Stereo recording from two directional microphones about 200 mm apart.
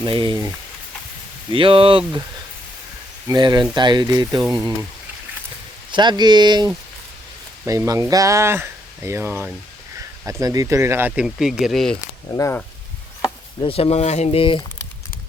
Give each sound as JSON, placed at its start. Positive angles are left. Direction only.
{"t": 0.0, "sound": "speech", "side_deg": -25}
{"t": 3.2, "sound": "speech", "side_deg": -20}
{"t": 5.9, "sound": "speech", "side_deg": -20}
{"t": 11.9, "sound": "speech", "side_deg": 15}
{"t": 13.6, "sound": "speech", "side_deg": 30}